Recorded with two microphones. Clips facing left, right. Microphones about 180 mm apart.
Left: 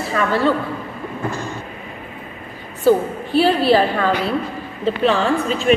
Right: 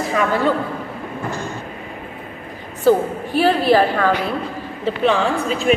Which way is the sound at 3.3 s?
15° right (ahead or behind).